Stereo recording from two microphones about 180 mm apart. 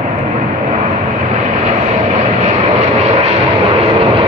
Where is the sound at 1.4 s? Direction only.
40° right (ahead or behind).